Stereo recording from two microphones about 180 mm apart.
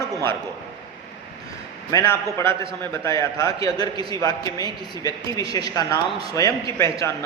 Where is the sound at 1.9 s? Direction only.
20° left (ahead or behind).